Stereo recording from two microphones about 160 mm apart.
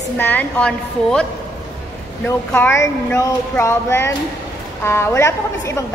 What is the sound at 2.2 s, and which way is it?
A woman's voice, 15° left (ahead or behind).